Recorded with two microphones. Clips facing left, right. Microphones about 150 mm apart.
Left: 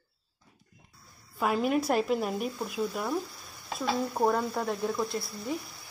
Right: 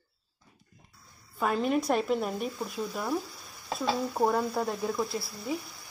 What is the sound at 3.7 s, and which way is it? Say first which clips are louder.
Speech: right 1 dB; 35° right (ahead or behind).